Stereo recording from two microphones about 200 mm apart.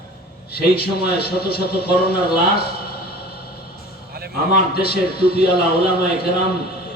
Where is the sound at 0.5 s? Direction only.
50° left (ahead or behind).